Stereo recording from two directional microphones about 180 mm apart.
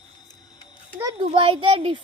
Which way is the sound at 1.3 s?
30° right (ahead or behind).